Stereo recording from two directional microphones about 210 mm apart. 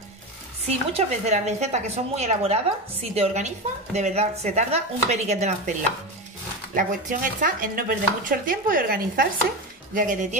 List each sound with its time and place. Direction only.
0.7 s speech: 30° right (ahead or behind)